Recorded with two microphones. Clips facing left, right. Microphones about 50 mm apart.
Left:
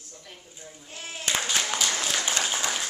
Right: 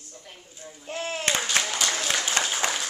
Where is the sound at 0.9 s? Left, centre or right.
Right.